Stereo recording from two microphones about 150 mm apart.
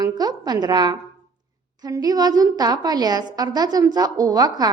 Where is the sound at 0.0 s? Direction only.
25° right (ahead or behind).